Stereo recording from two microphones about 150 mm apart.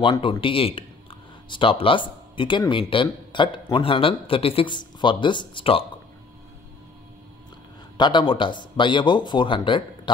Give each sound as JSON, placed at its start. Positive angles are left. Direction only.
{"t": 0.0, "sound": "speech", "side_deg": 30}
{"t": 8.0, "sound": "speech", "side_deg": 30}